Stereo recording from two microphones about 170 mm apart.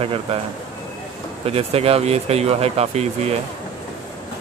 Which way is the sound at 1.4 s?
35° right (ahead or behind).